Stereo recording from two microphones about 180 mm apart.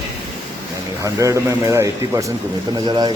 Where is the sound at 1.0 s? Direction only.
20° right (ahead or behind).